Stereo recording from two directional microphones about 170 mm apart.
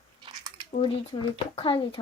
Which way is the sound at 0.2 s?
25° right (ahead or behind).